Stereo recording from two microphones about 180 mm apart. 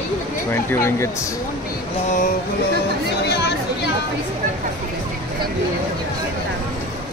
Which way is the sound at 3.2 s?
70° left (ahead or behind).